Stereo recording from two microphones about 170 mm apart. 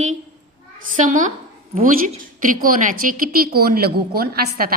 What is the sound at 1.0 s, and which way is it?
Speech, 50° right (ahead or behind).